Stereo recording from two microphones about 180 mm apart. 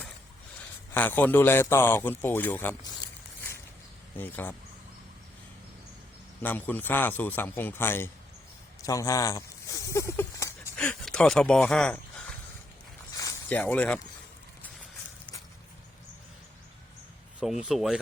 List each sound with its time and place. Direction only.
0.9 s speech: 10° left (ahead or behind)
4.2 s speech: 10° left (ahead or behind)
6.4 s speech: 10° left (ahead or behind)
10.8 s speech: 5° left (ahead or behind)
13.1 s a sound: 20° left (ahead or behind)
13.6 s speech: 10° left (ahead or behind)
17.4 s speech: centre (ahead or behind)